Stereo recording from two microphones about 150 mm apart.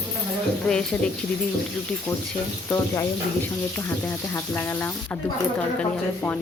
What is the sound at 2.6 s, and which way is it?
Speech, 20° left (ahead or behind).